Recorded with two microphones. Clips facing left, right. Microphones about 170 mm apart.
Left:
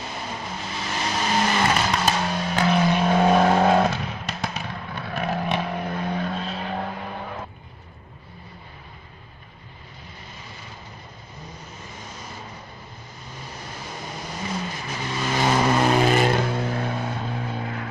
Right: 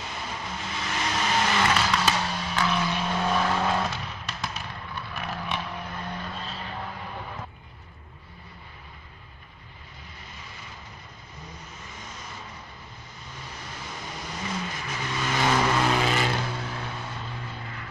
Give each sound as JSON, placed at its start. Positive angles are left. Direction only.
{"t": 0.7, "sound": "vehicle", "side_deg": 35}
{"t": 14.7, "sound": "vehicle", "side_deg": 35}